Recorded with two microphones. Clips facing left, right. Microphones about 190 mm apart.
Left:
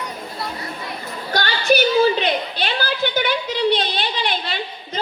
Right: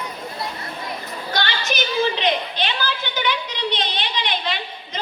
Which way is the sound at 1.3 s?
40° left (ahead or behind).